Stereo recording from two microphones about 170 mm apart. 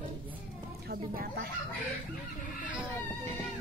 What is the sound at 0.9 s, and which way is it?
Speech, 60° right (ahead or behind).